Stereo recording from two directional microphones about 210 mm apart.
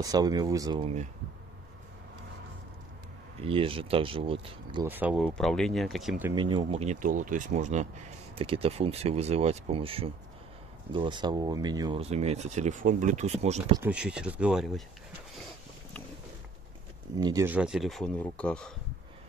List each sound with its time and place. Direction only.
0.0 s speech: 20° right (ahead or behind)
3.3 s speech: 25° right (ahead or behind)
4.8 s speech: 10° right (ahead or behind)
6.3 s speech: 25° right (ahead or behind)
13.8 s speech: 5° right (ahead or behind)
17.2 s speech: 15° right (ahead or behind); by 18.7 s 5° left (ahead or behind)